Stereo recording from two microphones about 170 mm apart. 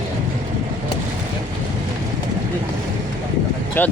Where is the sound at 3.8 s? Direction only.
10° left (ahead or behind).